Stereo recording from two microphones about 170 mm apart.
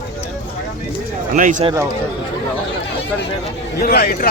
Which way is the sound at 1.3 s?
50° right (ahead or behind).